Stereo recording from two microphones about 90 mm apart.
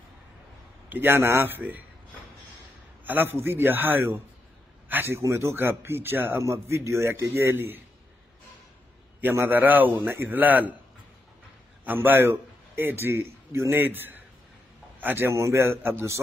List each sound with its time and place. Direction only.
0.8 s speech: 25° right (ahead or behind)
3.1 s speech: 25° right (ahead or behind)
9.2 s speech: 25° right (ahead or behind)
11.8 s a man's voice: 20° right (ahead or behind)